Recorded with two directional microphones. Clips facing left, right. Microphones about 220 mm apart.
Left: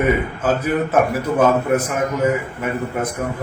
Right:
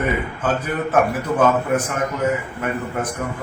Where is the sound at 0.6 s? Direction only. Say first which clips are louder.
Left 1 dB; 10° left (ahead or behind).